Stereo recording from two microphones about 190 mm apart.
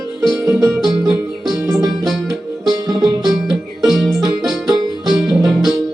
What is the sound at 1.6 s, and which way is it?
Music, 20° right (ahead or behind).